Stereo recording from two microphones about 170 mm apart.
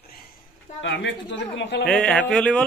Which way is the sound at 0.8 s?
90° left.